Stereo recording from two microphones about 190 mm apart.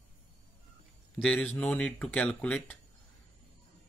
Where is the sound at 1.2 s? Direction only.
5° left (ahead or behind).